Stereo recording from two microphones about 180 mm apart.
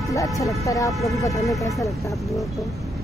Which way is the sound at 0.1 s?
15° left (ahead or behind).